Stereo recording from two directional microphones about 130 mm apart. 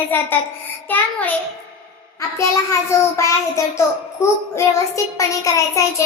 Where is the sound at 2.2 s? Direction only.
25° left (ahead or behind).